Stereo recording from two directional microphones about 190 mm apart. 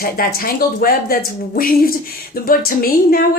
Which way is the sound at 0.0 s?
50° left (ahead or behind).